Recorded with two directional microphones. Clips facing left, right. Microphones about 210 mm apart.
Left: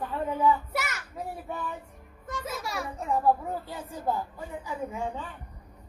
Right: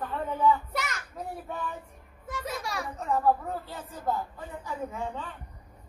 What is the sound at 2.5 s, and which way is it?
A child's voice, 5° left (ahead or behind).